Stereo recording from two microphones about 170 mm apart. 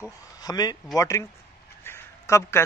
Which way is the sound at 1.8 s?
15° left (ahead or behind).